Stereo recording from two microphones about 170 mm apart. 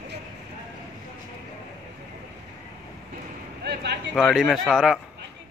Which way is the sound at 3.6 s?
80° right.